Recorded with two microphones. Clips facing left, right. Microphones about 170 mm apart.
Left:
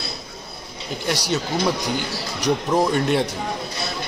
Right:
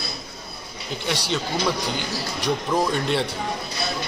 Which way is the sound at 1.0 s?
40° left (ahead or behind).